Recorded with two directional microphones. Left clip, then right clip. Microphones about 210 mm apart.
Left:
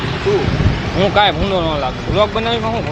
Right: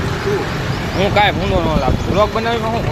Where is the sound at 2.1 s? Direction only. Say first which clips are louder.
Left 1 dB; 5° left (ahead or behind).